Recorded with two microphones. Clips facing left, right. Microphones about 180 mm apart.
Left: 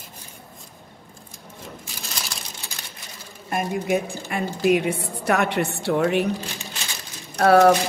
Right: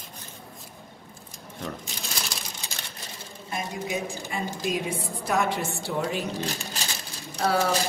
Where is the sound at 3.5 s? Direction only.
60° left (ahead or behind).